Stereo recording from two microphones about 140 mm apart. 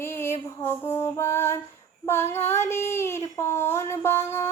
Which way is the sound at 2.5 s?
20° left (ahead or behind).